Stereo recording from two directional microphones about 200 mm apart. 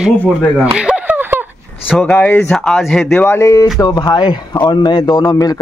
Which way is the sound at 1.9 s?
5° left (ahead or behind).